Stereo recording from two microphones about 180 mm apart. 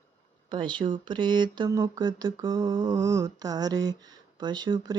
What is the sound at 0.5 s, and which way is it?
Speech, 25° right (ahead or behind).